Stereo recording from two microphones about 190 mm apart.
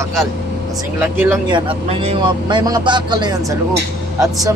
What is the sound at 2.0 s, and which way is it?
A man's voice, 25° right (ahead or behind).